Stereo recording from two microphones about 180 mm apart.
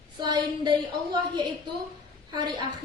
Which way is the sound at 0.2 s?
25° right (ahead or behind).